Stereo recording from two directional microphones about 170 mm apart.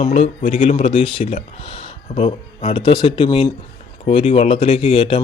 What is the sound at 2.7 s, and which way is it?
Speech, 25° left (ahead or behind).